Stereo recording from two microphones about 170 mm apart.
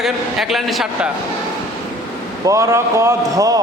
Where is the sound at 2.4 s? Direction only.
20° right (ahead or behind).